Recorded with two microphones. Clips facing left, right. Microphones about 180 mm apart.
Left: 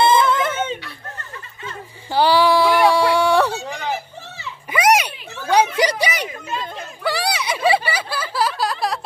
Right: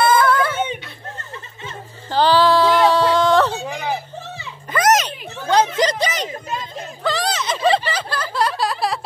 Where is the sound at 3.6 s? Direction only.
15° right (ahead or behind).